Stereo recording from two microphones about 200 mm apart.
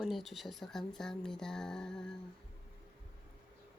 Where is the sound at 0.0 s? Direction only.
Centre (ahead or behind).